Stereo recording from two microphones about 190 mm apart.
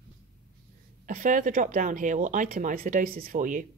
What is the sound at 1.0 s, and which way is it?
Speech, 45° right (ahead or behind).